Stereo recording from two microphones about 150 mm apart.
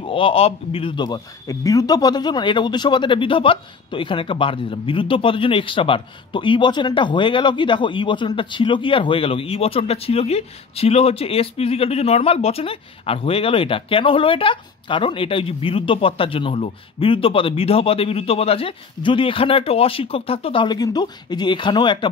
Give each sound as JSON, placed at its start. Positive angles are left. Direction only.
{"t": 0.0, "sound": "speech", "side_deg": 35}